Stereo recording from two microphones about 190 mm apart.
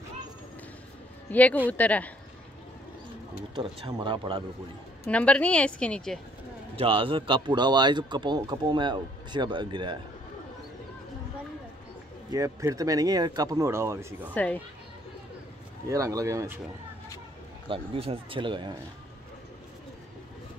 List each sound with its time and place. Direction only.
1.3 s a woman's voice: 10° left (ahead or behind)
3.5 s speech: 25° right (ahead or behind)
5.0 s a woman's voice: 5° left (ahead or behind)
6.8 s speech: 30° right (ahead or behind)
12.3 s speech: 15° right (ahead or behind)
14.3 s a woman's voice: 10° left (ahead or behind)
15.9 s speech: 15° right (ahead or behind)
17.6 s speech: 30° right (ahead or behind)